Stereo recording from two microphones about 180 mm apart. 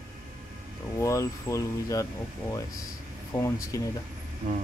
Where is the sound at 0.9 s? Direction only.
15° left (ahead or behind).